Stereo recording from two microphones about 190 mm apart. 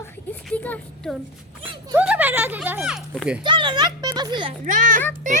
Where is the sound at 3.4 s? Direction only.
25° right (ahead or behind).